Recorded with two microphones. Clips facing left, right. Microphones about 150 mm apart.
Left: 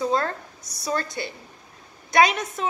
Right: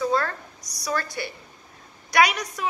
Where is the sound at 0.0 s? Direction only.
25° left (ahead or behind).